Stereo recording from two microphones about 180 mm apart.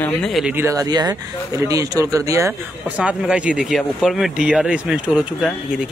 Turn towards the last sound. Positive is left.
turn(degrees=-5)  # may be behind; listen again after turning